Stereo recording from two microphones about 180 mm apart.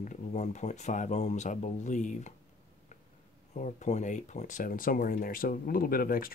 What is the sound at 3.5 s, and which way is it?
Speech, 40° left (ahead or behind).